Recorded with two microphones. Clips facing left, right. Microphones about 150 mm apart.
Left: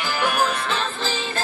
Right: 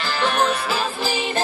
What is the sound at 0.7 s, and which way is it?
Music, 10° right (ahead or behind).